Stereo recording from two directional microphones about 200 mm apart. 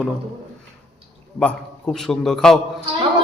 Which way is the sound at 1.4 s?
5° left (ahead or behind).